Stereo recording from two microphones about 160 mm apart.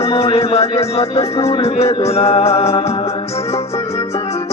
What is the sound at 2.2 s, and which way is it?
Music, 40° left (ahead or behind).